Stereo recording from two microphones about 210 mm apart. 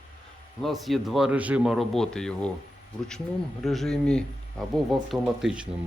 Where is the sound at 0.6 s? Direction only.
Centre (ahead or behind).